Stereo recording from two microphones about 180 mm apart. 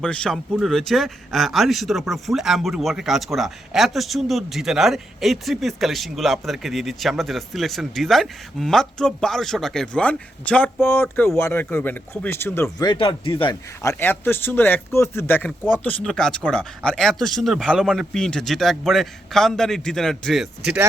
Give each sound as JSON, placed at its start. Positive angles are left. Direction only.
{"t": 0.0, "sound": "speech", "side_deg": 5}
{"t": 12.9, "sound": "speech", "side_deg": 25}
{"t": 13.8, "sound": "speech", "side_deg": 10}